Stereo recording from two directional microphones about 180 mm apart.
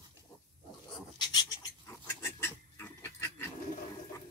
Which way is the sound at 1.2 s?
20° left (ahead or behind).